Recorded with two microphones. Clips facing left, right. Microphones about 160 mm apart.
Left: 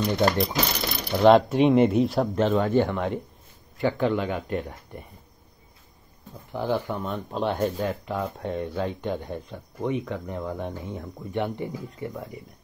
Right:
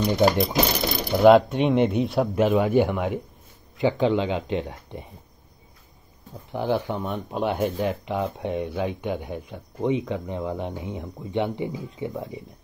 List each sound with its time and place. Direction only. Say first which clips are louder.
0.0 s a man's voice: right 3 dB; 5° right (ahead or behind)
6.5 s speech: right 2 dB; 15° right (ahead or behind)